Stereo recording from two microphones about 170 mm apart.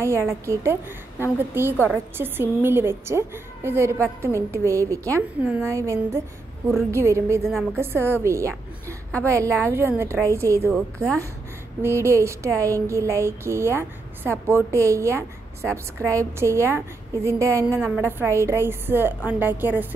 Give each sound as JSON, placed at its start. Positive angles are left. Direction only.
{"t": 0.0, "sound": "a woman's voice", "side_deg": -15}
{"t": 8.8, "sound": "a woman's voice", "side_deg": 10}
{"t": 9.7, "sound": "a woman's voice", "side_deg": -15}
{"t": 17.7, "sound": "a woman's voice", "side_deg": -10}